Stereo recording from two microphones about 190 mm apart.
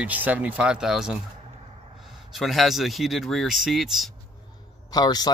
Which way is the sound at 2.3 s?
Centre (ahead or behind).